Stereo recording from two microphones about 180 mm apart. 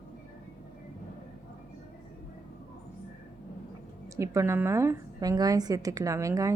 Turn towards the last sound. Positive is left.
turn(degrees=-15)  # may be behind; listen again after turning